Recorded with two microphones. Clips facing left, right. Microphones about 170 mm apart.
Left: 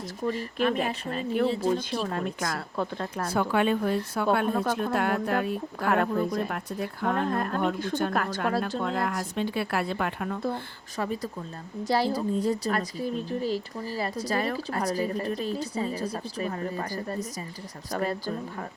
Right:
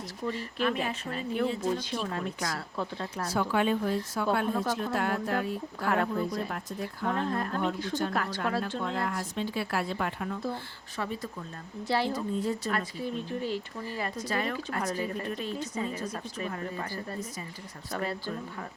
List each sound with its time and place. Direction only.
0.3 s a woman's voice: 40° left (ahead or behind)
9.3 s speech: 60° left (ahead or behind)
10.9 s a woman's voice: 40° left (ahead or behind)